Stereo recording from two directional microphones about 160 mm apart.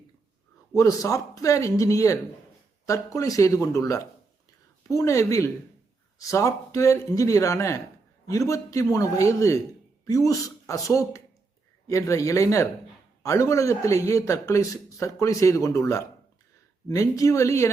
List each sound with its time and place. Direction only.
0.7 s a man's voice: 20° left (ahead or behind)